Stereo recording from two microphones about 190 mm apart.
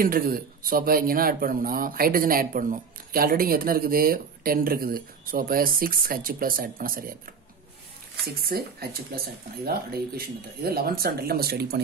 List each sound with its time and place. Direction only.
0.0 s speech: 50° right (ahead or behind)
8.4 s speech: 55° right (ahead or behind)